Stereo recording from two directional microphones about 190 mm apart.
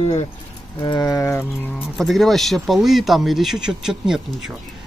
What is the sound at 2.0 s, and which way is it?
Speech, centre (ahead or behind).